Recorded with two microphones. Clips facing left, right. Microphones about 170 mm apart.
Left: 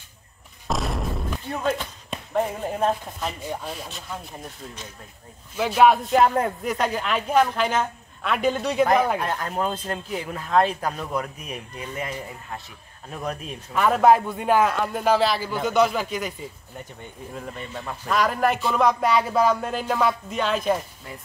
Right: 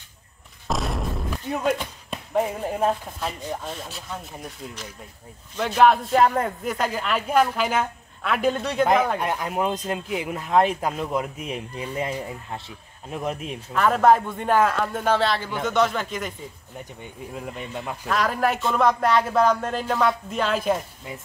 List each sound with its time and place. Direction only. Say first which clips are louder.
0.7 s boom: even; centre (ahead or behind)
1.5 s speech: right 2 dB; 15° right (ahead or behind)
2.0 s a man's voice: right 1 dB; centre (ahead or behind)
5.6 s a man's voice: even; 5° left (ahead or behind)
9.2 s speech: right 1 dB; 15° right (ahead or behind)
13.7 s a man's voice: left 1 dB; 5° left (ahead or behind)
17.3 s speech: right 1 dB; 10° right (ahead or behind)
18.0 s a man's voice: left 1 dB; centre (ahead or behind)